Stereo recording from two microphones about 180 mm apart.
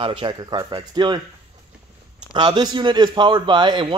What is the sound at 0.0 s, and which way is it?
A man's voice, 30° right (ahead or behind).